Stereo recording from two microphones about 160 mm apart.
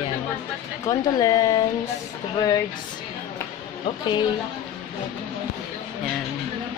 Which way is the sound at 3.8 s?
30° left (ahead or behind).